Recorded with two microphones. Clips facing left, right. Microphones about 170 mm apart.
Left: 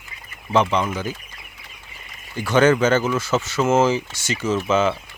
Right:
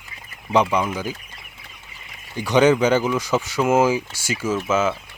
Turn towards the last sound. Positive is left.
turn(degrees=-5)  # may be behind; listen again after turning